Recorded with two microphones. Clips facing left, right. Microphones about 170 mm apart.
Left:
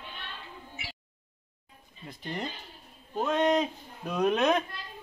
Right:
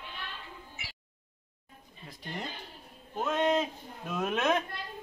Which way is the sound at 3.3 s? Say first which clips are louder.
Left 2 dB; centre (ahead or behind).